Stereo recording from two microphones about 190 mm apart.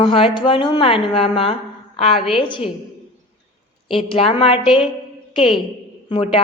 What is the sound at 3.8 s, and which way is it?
A woman's voice, 30° left (ahead or behind).